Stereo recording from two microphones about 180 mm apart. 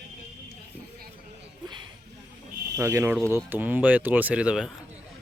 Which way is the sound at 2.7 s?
15° right (ahead or behind).